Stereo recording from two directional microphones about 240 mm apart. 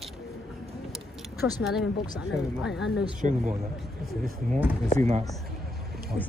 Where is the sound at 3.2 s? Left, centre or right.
Right.